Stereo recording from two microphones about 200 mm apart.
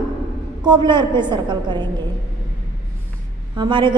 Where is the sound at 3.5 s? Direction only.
25° right (ahead or behind).